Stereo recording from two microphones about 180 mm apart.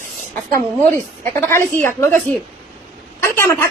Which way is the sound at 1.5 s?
15° left (ahead or behind).